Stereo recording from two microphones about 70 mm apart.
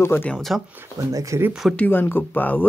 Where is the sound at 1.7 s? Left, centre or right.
Left.